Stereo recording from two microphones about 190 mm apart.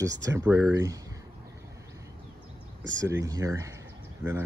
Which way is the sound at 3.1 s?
15° right (ahead or behind).